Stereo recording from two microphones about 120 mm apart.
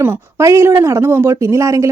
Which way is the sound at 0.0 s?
20° right (ahead or behind).